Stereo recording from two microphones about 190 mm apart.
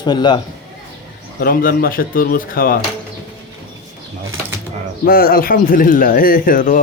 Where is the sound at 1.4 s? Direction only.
50° left (ahead or behind).